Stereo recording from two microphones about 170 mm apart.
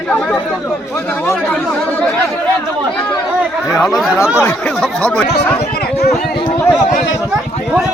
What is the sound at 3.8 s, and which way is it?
Speech, centre (ahead or behind).